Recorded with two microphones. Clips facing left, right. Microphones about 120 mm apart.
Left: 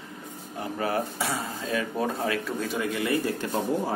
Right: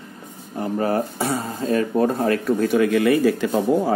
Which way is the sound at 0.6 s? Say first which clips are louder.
Right 7 dB; 40° right (ahead or behind).